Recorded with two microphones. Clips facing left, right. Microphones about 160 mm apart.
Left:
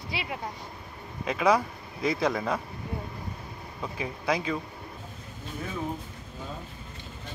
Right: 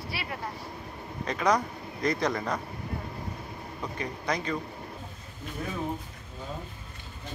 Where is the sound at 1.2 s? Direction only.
5° left (ahead or behind).